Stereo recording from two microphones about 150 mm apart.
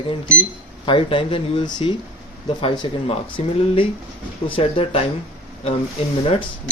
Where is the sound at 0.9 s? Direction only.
35° left (ahead or behind).